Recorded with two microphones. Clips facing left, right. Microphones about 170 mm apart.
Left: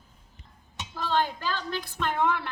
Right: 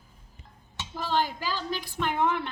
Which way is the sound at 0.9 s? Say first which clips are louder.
Left 1 dB; 10° right (ahead or behind).